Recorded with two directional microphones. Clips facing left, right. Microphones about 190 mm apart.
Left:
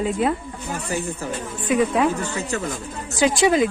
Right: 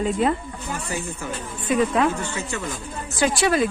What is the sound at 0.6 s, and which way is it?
Speech, 35° left (ahead or behind).